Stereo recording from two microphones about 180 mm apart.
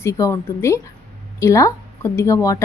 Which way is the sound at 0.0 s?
15° left (ahead or behind).